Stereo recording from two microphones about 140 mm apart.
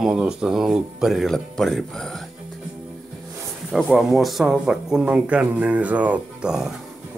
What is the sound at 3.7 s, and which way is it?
Speech, centre (ahead or behind).